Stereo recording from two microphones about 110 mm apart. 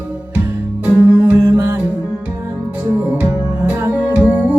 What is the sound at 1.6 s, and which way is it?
Music, 25° right (ahead or behind).